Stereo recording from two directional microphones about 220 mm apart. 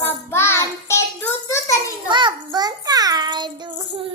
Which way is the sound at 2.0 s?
20° right (ahead or behind).